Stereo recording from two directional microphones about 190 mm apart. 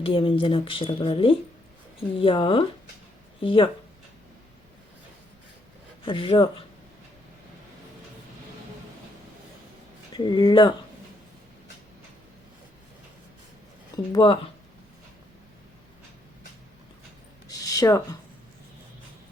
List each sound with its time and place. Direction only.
0.0 s speech: 30° left (ahead or behind)
6.1 s speech: 25° left (ahead or behind)
10.2 s speech: 25° left (ahead or behind)
13.9 s speech: 25° left (ahead or behind)
17.5 s a sound: 20° left (ahead or behind)